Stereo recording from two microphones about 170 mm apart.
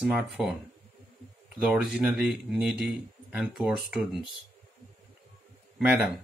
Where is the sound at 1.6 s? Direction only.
5° right (ahead or behind).